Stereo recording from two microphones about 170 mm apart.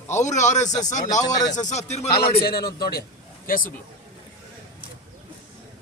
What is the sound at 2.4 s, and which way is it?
A man's voice, 65° left (ahead or behind).